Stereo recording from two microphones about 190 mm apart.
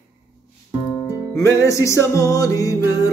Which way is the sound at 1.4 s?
15° left (ahead or behind).